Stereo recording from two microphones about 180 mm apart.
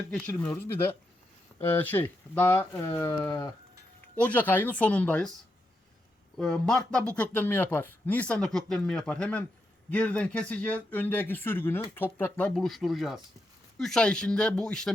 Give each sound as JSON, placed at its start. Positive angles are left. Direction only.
{"t": 0.1, "sound": "speech", "side_deg": 5}
{"t": 1.6, "sound": "speech", "side_deg": 10}
{"t": 4.1, "sound": "speech", "side_deg": 10}
{"t": 6.3, "sound": "speech", "side_deg": 5}